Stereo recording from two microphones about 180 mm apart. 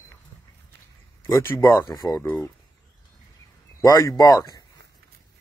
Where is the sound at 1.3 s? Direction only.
15° left (ahead or behind).